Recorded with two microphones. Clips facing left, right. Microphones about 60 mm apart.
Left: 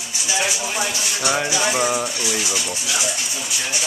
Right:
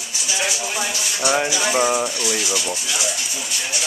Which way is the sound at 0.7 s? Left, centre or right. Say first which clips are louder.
Left 1 dB; centre.